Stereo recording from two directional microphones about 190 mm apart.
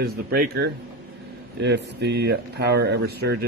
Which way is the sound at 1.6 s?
65° right (ahead or behind).